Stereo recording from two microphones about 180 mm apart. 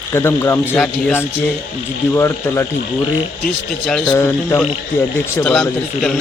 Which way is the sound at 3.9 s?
10° left (ahead or behind).